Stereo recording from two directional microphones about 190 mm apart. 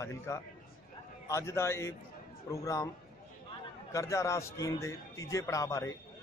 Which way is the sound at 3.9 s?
15° left (ahead or behind).